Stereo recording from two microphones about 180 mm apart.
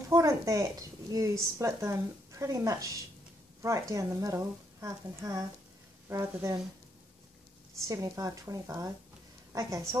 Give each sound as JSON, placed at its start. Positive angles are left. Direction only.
{"t": 0.1, "sound": "a woman's voice", "side_deg": -20}
{"t": 7.9, "sound": "a woman's voice", "side_deg": -20}